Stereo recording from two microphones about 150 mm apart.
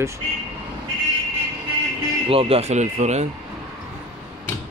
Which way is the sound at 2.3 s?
40° right (ahead or behind).